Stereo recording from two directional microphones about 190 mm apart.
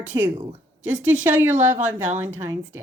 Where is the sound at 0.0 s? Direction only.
10° right (ahead or behind).